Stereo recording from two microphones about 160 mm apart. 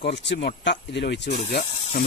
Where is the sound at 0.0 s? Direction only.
90° left.